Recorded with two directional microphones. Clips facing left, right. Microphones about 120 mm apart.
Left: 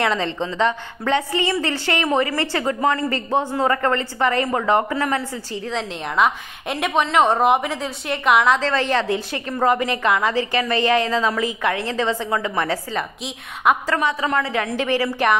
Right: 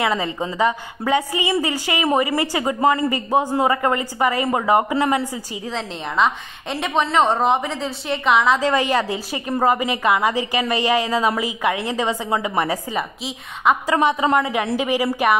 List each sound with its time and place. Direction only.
0.0 s a woman's voice: 10° right (ahead or behind)
5.7 s a woman's voice: 5° left (ahead or behind)
8.5 s a woman's voice: 10° right (ahead or behind)
13.9 s a woman's voice: 25° right (ahead or behind)